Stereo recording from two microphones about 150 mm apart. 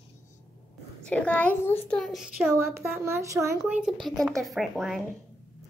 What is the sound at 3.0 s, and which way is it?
Speech, 20° right (ahead or behind).